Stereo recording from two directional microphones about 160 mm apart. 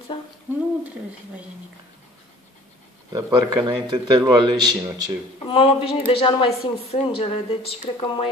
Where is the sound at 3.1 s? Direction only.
25° right (ahead or behind).